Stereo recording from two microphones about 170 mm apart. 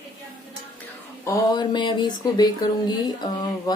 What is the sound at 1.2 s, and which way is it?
Speech, 20° left (ahead or behind).